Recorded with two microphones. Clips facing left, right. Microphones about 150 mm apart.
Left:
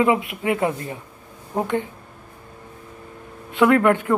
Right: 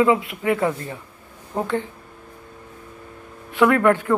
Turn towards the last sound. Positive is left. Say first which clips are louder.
# even
turn(degrees=20)  # may be behind; listen again after turning